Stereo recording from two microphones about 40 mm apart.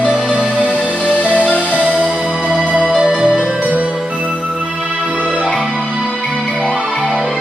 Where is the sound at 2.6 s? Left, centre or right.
Right.